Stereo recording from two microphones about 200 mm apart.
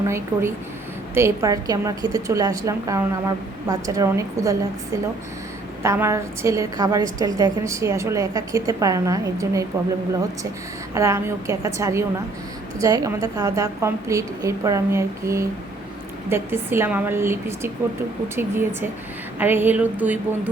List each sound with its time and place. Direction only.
0.0 s a woman's voice: 15° right (ahead or behind)
5.8 s a woman's voice: 15° right (ahead or behind)
10.9 s a woman's voice: 15° right (ahead or behind)